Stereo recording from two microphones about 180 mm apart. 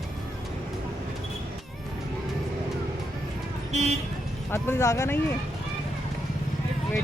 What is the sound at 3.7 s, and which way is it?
Speech, 40° right (ahead or behind).